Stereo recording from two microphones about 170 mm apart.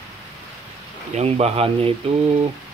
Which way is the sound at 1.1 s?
35° right (ahead or behind).